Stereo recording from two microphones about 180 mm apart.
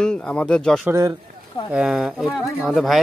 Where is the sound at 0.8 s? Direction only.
15° right (ahead or behind).